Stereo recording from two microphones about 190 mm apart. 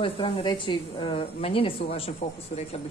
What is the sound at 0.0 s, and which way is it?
A woman's voice, 25° left (ahead or behind).